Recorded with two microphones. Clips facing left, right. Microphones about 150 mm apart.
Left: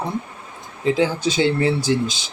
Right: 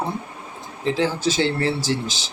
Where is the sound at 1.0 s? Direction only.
15° left (ahead or behind).